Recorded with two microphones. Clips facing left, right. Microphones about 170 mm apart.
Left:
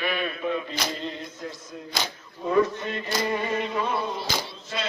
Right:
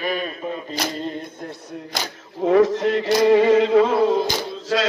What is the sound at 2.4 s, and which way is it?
Chant, 85° right.